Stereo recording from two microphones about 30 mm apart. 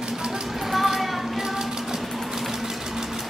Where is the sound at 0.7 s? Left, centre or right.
Centre.